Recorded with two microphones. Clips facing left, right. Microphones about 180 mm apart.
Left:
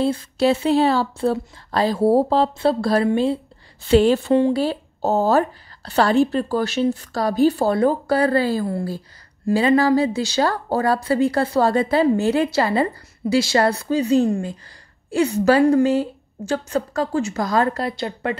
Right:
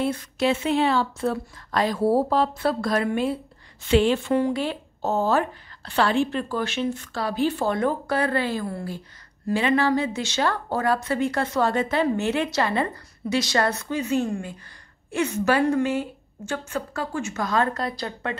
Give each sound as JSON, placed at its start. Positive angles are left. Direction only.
{"t": 0.0, "sound": "speech", "side_deg": 30}